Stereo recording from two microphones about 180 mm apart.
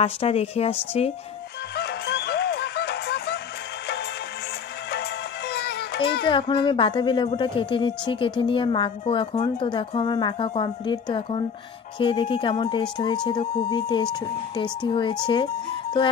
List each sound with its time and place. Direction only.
0.0 s a woman's voice: 35° left (ahead or behind)
1.8 s music: 65° left (ahead or behind)
5.5 s music: 65° left (ahead or behind)
6.2 s speech: 30° left (ahead or behind)